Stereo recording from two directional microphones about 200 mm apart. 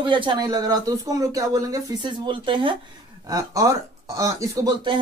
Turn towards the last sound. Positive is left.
turn(degrees=-20)  # may be behind; listen again after turning